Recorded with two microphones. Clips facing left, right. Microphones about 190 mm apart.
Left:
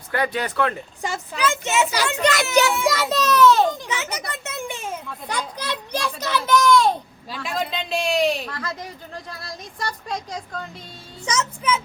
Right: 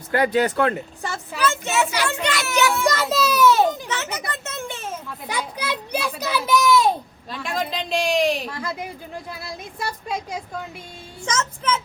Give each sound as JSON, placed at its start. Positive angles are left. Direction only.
{"t": 0.1, "sound": "speech", "side_deg": -30}
{"t": 1.4, "sound": "a child's voice", "side_deg": 15}
{"t": 2.2, "sound": "a child's voice", "side_deg": 45}
{"t": 2.8, "sound": "a child's voice", "side_deg": 0}
{"t": 3.8, "sound": "a child's voice", "side_deg": 15}
{"t": 4.4, "sound": "children playing", "side_deg": 15}
{"t": 5.2, "sound": "a child's voice", "side_deg": -5}
{"t": 8.4, "sound": "a woman's voice", "side_deg": -10}
{"t": 11.3, "sound": "a child's voice", "side_deg": 10}